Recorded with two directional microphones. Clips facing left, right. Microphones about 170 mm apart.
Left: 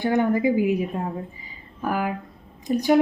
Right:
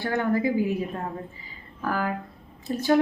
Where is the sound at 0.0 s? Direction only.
15° left (ahead or behind).